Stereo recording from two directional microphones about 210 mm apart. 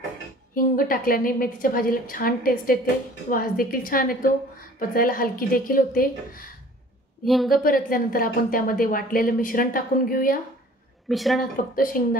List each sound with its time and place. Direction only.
0.7 s a woman's voice: 45° left (ahead or behind)
7.2 s speech: centre (ahead or behind)
7.5 s a woman's voice: 40° left (ahead or behind)
11.1 s speech: centre (ahead or behind)
11.7 s a woman's voice: 40° left (ahead or behind)